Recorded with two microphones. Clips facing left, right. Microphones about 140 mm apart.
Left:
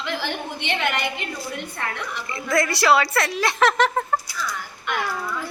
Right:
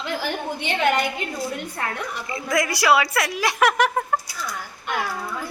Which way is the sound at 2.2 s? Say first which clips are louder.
Left 1 dB; 15° right (ahead or behind).